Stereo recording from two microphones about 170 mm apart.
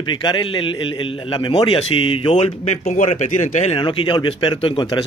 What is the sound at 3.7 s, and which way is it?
Speech, 30° left (ahead or behind).